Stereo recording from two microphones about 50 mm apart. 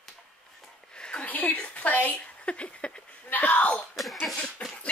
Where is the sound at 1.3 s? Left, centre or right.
Left.